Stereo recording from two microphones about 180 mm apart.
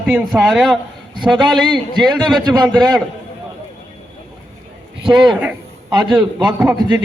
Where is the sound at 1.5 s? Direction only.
25° right (ahead or behind).